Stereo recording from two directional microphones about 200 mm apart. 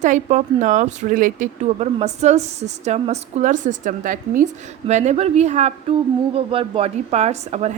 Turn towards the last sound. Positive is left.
turn(degrees=-35)  # may be behind; listen again after turning